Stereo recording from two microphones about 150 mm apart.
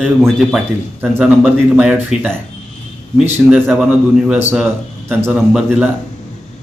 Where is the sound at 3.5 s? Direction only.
10° right (ahead or behind).